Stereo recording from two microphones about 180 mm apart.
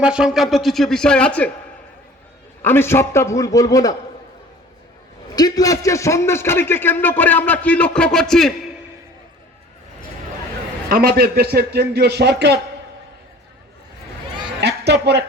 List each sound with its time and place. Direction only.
0.0 s speech: 5° right (ahead or behind)
2.6 s a man's voice: 15° left (ahead or behind)
5.3 s a man's voice: 20° left (ahead or behind); by 8.5 s 5° left (ahead or behind)
10.8 s a man's voice: 55° right (ahead or behind)
14.6 s a sound: 65° right (ahead or behind)